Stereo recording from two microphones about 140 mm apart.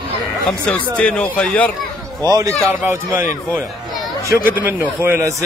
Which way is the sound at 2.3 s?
25° right (ahead or behind).